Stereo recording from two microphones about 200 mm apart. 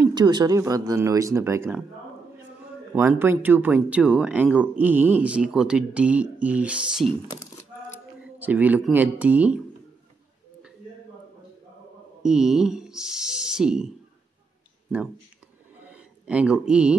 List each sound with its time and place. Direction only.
0.0 s speech: 20° right (ahead or behind)
2.9 s speech: 10° right (ahead or behind)
8.4 s speech: 10° right (ahead or behind)
12.2 s speech: 5° right (ahead or behind)
15.9 s speech: 5° right (ahead or behind)